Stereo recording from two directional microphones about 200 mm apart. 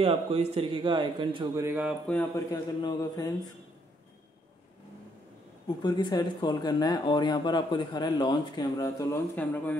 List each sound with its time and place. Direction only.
0.0 s a man's voice: 30° right (ahead or behind); by 2.0 s 10° right (ahead or behind)
2.5 s speech: 20° left (ahead or behind)
5.8 s speech: 20° left (ahead or behind)